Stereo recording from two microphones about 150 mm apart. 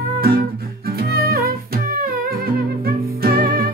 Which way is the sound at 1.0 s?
90° right.